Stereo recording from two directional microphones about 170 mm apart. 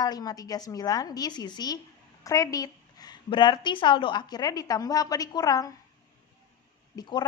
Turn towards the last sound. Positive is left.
turn(degrees=25)  # may be behind; listen again after turning